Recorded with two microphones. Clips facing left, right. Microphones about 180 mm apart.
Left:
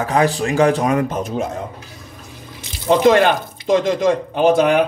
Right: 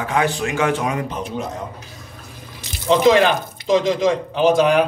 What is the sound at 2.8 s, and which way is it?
Speech, 50° left (ahead or behind).